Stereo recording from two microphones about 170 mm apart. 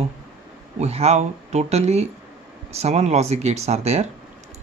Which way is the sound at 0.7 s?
40° right (ahead or behind).